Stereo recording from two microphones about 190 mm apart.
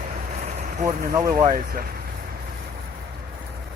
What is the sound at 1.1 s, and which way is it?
Speech, 20° right (ahead or behind).